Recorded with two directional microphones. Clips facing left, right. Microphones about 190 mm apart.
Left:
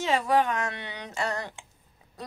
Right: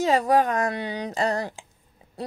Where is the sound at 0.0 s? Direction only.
40° right (ahead or behind).